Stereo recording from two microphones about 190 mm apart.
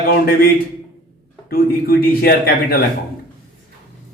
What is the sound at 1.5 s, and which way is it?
A man's voice, 50° left (ahead or behind).